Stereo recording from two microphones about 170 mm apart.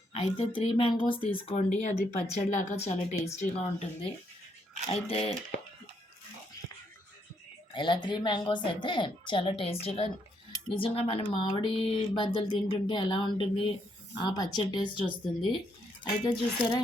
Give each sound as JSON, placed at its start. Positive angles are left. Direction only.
{"t": 0.1, "sound": "speech", "side_deg": 35}
{"t": 7.7, "sound": "speech", "side_deg": 30}